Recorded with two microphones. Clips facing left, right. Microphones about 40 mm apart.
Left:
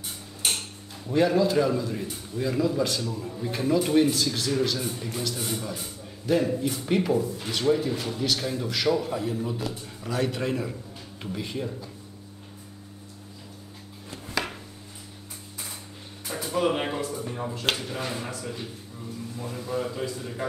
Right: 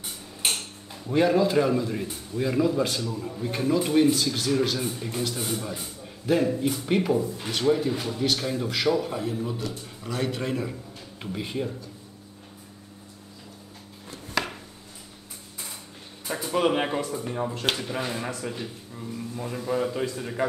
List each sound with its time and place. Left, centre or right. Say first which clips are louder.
1.1 s a man's voice: right 1 dB; centre
3.0 s a man's voice: right 1 dB; centre
11.3 s a man's voice: right 2 dB; centre
14.3 s chopping: right 2 dB; centre
16.5 s a man's voice: right 2 dB; centre